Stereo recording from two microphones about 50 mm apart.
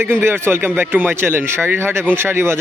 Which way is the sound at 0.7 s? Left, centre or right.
Right.